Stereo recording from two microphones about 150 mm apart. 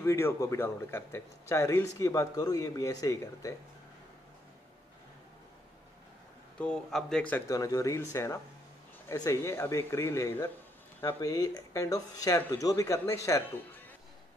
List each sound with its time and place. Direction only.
0.0 s a man's voice: 15° left (ahead or behind)
6.6 s speech: 5° left (ahead or behind)
7.4 s a man's voice: 20° left (ahead or behind)